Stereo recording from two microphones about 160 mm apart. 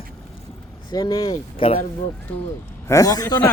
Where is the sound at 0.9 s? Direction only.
25° left (ahead or behind).